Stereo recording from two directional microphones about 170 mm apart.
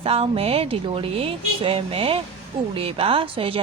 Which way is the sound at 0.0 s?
35° right (ahead or behind).